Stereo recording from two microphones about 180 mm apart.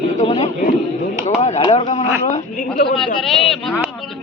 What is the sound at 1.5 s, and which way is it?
Speech, 35° left (ahead or behind).